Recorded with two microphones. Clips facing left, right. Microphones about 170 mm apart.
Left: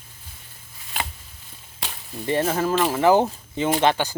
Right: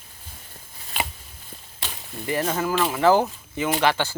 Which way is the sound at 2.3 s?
30° left (ahead or behind).